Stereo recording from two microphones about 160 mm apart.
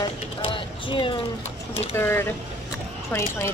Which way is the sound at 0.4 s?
30° left (ahead or behind).